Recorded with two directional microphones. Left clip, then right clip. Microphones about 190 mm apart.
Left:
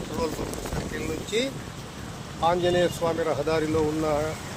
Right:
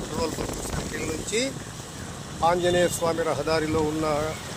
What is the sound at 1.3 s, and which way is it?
Speech, 15° right (ahead or behind).